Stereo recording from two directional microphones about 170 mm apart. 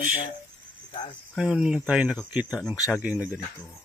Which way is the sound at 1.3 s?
5° right (ahead or behind).